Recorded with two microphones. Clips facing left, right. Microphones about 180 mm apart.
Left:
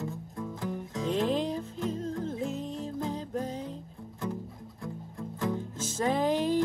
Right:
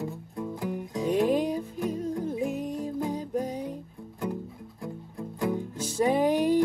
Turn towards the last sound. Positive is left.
turn(degrees=-10)  # may be behind; listen again after turning